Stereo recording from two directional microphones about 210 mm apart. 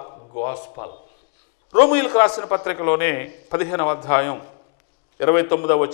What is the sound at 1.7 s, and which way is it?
A man's voice, 15° left (ahead or behind).